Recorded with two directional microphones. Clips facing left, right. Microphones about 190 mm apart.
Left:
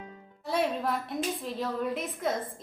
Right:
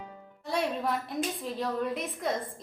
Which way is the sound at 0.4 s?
Centre (ahead or behind).